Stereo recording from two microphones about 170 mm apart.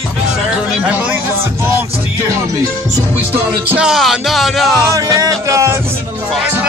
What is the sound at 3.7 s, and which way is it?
Music, 5° right (ahead or behind).